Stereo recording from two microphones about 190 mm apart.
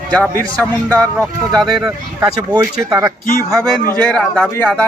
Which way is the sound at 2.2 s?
20° right (ahead or behind).